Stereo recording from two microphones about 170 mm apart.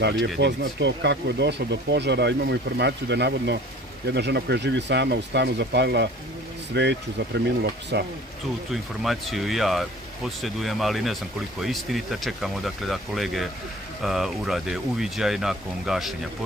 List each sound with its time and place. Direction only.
0.0 s speech: 90° right
6.7 s speech: 90° right
9.0 s speech: centre (ahead or behind)